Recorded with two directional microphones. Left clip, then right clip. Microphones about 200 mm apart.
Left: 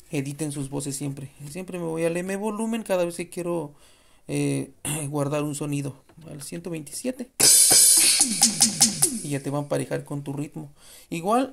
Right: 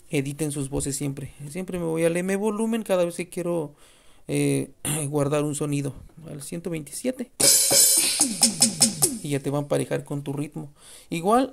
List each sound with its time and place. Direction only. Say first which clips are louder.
0.1 s speech: right 3 dB; 20° right (ahead or behind)
7.3 s music: left 2 dB; 15° left (ahead or behind)
9.2 s speech: right 2 dB; 20° right (ahead or behind)